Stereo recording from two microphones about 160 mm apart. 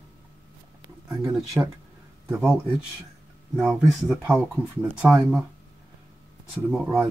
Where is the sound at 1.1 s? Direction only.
20° right (ahead or behind).